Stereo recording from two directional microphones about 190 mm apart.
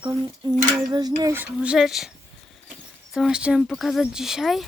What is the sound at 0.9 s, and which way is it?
Speech, 20° right (ahead or behind).